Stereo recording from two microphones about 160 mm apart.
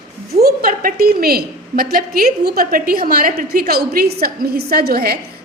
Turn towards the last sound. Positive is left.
turn(degrees=-75)  # may be behind; listen again after turning